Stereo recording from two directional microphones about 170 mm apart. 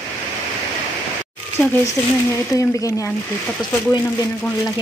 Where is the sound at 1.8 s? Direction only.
20° left (ahead or behind).